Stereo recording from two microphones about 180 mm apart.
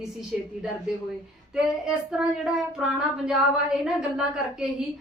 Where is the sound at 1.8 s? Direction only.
5° right (ahead or behind).